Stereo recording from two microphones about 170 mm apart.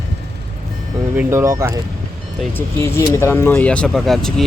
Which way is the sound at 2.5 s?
15° left (ahead or behind).